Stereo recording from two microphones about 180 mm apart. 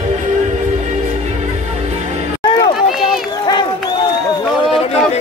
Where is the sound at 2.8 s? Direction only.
Centre (ahead or behind).